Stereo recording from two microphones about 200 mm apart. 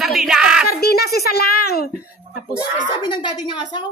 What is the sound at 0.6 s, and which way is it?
A child's voice, 50° left (ahead or behind).